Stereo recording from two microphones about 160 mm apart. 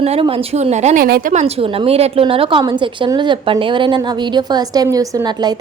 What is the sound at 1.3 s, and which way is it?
A woman's voice, 40° right (ahead or behind).